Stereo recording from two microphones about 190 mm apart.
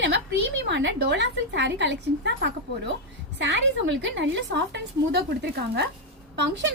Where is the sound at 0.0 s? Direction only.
65° right (ahead or behind).